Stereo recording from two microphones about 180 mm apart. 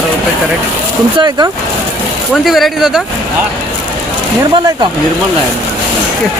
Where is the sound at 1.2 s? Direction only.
20° right (ahead or behind).